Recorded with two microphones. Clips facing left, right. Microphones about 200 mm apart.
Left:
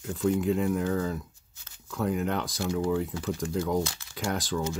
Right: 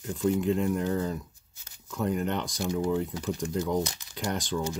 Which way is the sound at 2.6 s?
20° right (ahead or behind).